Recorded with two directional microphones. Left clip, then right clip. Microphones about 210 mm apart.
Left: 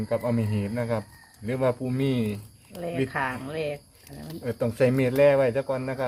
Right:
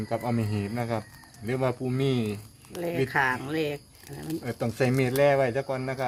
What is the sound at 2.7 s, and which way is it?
Speech, 40° right (ahead or behind).